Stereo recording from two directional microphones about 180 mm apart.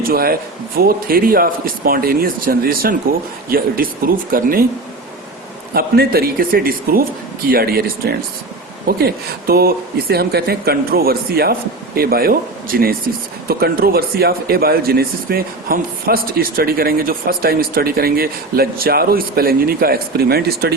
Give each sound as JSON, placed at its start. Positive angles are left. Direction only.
{"t": 0.0, "sound": "speech", "side_deg": -55}
{"t": 5.7, "sound": "speech", "side_deg": -60}